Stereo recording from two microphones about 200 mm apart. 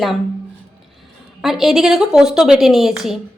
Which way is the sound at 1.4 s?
Centre (ahead or behind).